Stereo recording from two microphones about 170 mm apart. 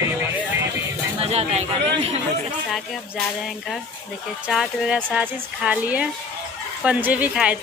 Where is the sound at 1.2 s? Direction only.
40° right (ahead or behind).